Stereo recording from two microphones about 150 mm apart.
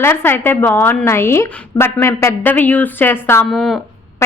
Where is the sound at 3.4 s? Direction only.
Centre (ahead or behind).